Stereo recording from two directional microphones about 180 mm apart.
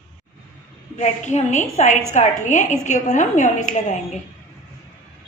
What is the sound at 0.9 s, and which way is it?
A woman's voice, 40° left (ahead or behind).